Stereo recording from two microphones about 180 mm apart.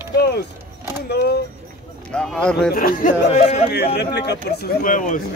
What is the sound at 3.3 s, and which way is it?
Speech, 40° left (ahead or behind).